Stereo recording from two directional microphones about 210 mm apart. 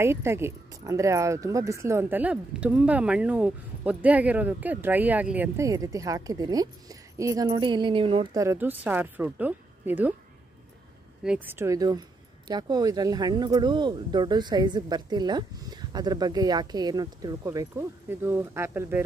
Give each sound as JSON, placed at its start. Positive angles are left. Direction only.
{"t": 0.0, "sound": "speech", "side_deg": -10}
{"t": 11.2, "sound": "speech", "side_deg": -10}